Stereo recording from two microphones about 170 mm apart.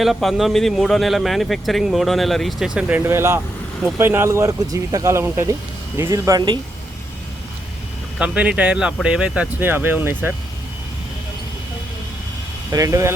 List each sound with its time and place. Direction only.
0.0 s speech: centre (ahead or behind); by 6.6 s 25° right (ahead or behind)
8.2 s speech: 5° right (ahead or behind)
12.7 s speech: 20° right (ahead or behind)